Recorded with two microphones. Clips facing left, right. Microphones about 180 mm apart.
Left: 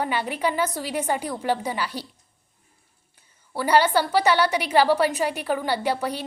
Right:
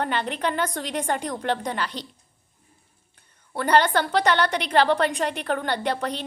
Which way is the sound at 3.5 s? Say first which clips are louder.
Left 1 dB; 10° left (ahead or behind).